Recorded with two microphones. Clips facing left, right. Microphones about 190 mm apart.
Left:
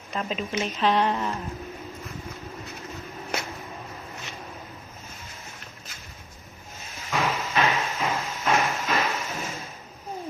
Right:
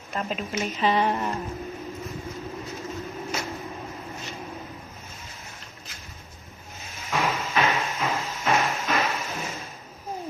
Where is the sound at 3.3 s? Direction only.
60° left (ahead or behind).